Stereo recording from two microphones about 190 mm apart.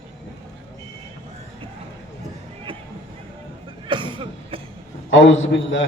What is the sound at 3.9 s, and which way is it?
Cough, 25° right (ahead or behind).